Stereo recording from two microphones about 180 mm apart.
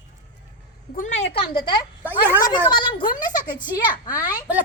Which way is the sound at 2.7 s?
25° left (ahead or behind).